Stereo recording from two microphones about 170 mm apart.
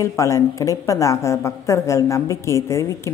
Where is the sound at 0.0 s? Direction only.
20° left (ahead or behind).